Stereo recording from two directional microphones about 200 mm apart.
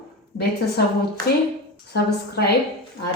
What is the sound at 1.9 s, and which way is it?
Speech, 55° left (ahead or behind).